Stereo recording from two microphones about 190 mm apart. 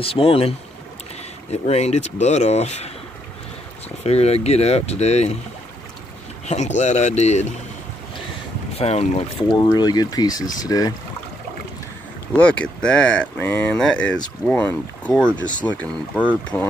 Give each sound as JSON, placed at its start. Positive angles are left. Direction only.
{"t": 0.0, "sound": "speech", "side_deg": 30}
{"t": 4.0, "sound": "speech", "side_deg": 35}
{"t": 6.4, "sound": "speech", "side_deg": 35}
{"t": 8.7, "sound": "speech", "side_deg": 35}
{"t": 9.5, "sound": "speech", "side_deg": 20}
{"t": 12.4, "sound": "speech", "side_deg": 5}